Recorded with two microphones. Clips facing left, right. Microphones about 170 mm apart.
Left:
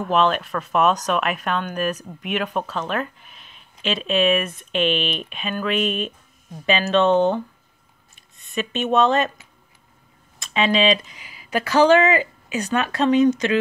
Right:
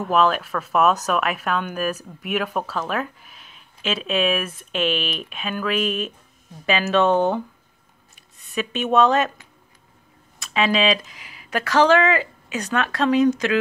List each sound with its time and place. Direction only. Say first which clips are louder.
0.0 s speech: even; 5° right (ahead or behind)
8.9 s speech: right 1 dB; 5° right (ahead or behind)
10.4 s speech: left 1 dB; 5° right (ahead or behind)